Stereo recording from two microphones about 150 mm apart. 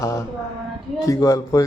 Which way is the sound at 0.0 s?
20° left (ahead or behind).